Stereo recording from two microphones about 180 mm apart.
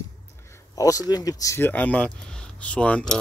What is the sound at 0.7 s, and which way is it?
Speech, 20° left (ahead or behind).